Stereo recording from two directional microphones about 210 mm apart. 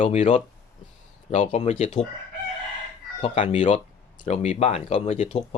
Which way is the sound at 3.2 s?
35° left (ahead or behind).